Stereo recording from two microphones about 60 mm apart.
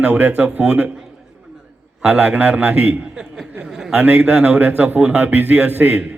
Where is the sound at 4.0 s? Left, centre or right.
Right.